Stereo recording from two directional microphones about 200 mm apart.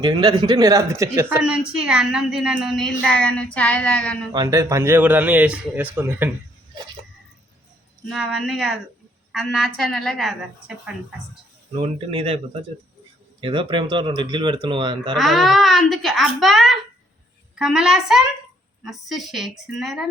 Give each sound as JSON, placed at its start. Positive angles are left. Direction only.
{"t": 0.0, "sound": "speech", "side_deg": -20}
{"t": 4.3, "sound": "speech", "side_deg": -15}
{"t": 8.0, "sound": "speech", "side_deg": 0}
{"t": 11.7, "sound": "speech", "side_deg": -25}
{"t": 13.4, "sound": "speech", "side_deg": -25}
{"t": 15.1, "sound": "speech", "side_deg": 0}